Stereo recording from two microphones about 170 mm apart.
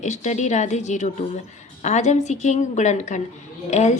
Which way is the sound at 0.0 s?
45° left (ahead or behind).